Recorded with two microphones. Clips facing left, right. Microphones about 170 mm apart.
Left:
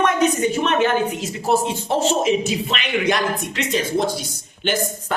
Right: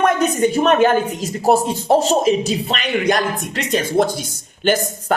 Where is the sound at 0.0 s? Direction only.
40° right (ahead or behind).